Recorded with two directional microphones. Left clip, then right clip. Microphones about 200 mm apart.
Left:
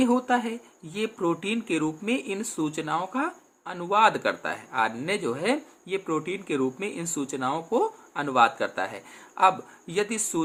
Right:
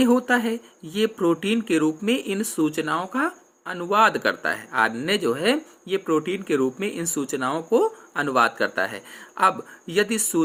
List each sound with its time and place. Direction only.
0.0 s speech: 20° right (ahead or behind)